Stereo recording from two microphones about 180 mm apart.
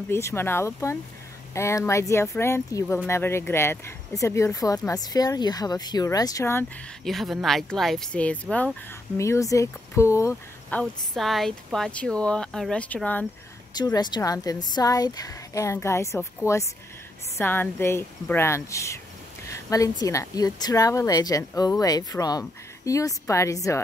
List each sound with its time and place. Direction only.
0.1 s speech: 15° left (ahead or behind)
7.1 s speech: centre (ahead or behind); by 10.8 s 15° left (ahead or behind)
10.8 s speech: centre (ahead or behind)
13.7 s speech: 20° left (ahead or behind)
17.4 s speech: 10° left (ahead or behind)